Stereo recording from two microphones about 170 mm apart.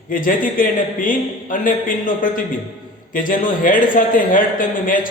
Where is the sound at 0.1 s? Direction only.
55° left (ahead or behind).